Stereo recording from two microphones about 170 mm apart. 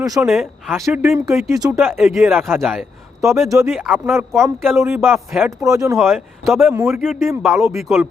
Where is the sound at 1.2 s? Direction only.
20° right (ahead or behind).